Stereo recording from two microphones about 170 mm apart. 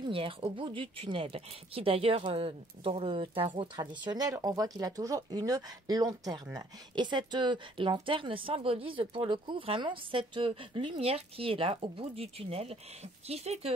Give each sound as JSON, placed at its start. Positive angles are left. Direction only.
{"t": 0.0, "sound": "a woman's voice", "side_deg": -30}